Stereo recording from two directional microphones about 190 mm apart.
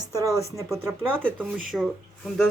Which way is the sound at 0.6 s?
15° right (ahead or behind).